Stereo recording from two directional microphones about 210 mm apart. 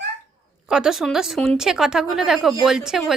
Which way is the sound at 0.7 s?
5° right (ahead or behind).